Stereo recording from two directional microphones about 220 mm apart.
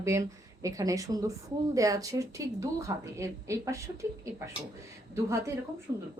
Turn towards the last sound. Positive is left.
turn(degrees=-20)  # may be behind; listen again after turning